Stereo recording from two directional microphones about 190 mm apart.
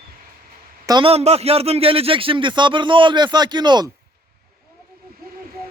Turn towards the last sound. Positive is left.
turn(degrees=-25)  # may be behind; listen again after turning